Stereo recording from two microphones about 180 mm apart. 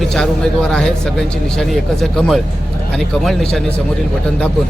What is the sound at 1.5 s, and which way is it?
Speech, centre (ahead or behind).